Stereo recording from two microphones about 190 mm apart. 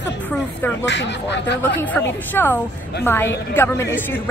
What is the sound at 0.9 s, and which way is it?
Speech, 65° left (ahead or behind).